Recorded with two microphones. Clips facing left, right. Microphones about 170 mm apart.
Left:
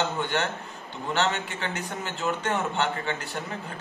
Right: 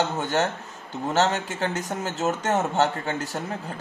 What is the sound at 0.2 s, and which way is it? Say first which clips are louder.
Speech: right 3 dB; 40° right (ahead or behind).